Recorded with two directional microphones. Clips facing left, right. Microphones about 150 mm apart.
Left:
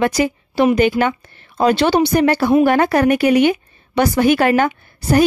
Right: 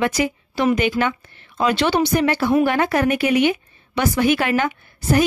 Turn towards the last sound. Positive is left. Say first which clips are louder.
# left 3 dB
turn(degrees=35)  # may be behind; listen again after turning